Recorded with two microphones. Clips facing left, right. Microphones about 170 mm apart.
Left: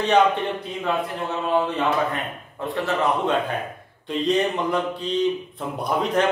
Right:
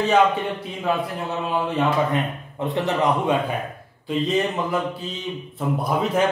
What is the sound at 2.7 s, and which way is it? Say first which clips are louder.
Speech: right 1 dB; 15° right (ahead or behind).